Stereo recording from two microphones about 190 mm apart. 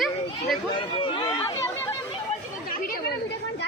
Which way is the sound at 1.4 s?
15° left (ahead or behind).